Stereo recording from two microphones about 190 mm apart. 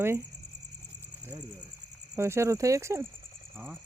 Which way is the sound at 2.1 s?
15° right (ahead or behind).